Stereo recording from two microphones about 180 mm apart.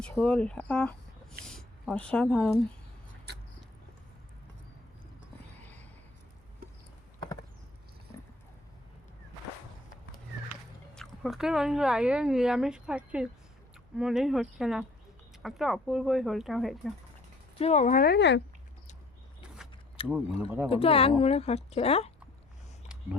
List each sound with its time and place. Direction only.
0.0 s speech: 5° left (ahead or behind)
10.9 s speech: centre (ahead or behind)
17.6 s speech: 40° left (ahead or behind); by 18.4 s 75° left (ahead or behind)
20.0 s speech: 30° left (ahead or behind)